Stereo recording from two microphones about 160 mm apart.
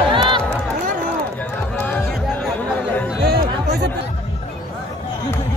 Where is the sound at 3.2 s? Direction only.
85° right.